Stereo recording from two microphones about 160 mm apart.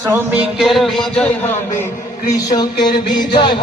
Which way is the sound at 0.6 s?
Centre (ahead or behind).